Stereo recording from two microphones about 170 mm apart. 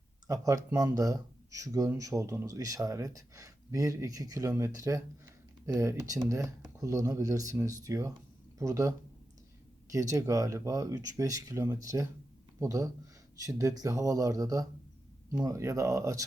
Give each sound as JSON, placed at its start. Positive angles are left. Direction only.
{"t": 0.3, "sound": "speech", "side_deg": -20}